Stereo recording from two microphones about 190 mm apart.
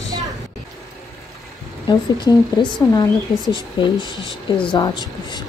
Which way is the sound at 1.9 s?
20° left (ahead or behind).